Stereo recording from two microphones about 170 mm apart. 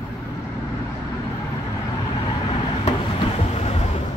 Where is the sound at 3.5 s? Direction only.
40° left (ahead or behind).